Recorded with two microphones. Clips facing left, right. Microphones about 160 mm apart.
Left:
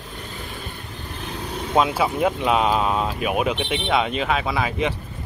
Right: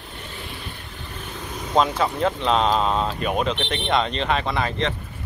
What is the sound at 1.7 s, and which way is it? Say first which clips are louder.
Speech: left 1 dB; 5° left (ahead or behind).